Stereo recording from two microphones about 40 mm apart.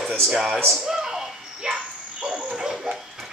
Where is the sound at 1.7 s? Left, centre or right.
Right.